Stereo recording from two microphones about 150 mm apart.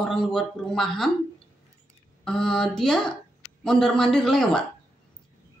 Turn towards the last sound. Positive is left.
turn(degrees=5)  # may be behind; listen again after turning